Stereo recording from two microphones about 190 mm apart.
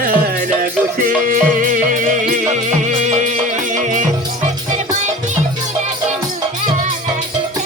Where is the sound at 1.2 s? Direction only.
45° right (ahead or behind).